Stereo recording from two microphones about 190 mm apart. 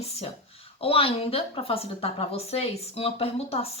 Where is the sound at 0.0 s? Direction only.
30° left (ahead or behind).